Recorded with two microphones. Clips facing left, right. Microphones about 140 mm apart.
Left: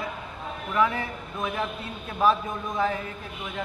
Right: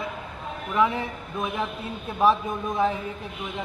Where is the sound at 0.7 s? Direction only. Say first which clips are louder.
Right 1 dB; 20° right (ahead or behind).